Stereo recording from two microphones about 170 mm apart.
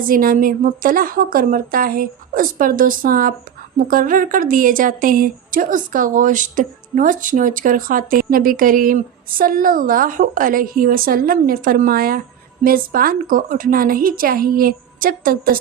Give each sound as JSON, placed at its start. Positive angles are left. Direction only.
{"t": 0.0, "sound": "a woman's voice", "side_deg": -55}